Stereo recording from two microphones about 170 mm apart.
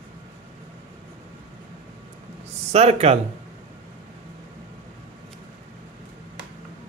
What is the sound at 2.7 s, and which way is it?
Speech, 40° right (ahead or behind).